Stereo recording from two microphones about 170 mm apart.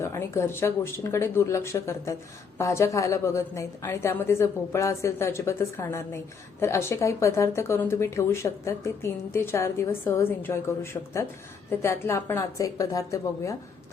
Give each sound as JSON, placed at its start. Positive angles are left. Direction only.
{"t": 0.0, "sound": "speech", "side_deg": 15}
{"t": 11.8, "sound": "a woman's voice", "side_deg": 15}